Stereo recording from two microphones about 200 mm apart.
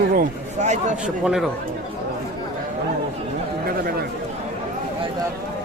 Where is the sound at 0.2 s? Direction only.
35° right (ahead or behind).